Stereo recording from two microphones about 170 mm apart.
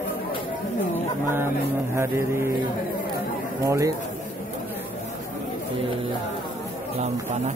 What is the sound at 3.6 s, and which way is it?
Mantra, 20° right (ahead or behind).